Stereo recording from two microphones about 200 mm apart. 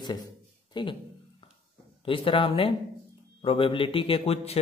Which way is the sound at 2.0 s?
25° left (ahead or behind).